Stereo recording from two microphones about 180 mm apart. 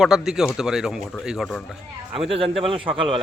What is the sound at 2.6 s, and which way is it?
Speech, 30° right (ahead or behind).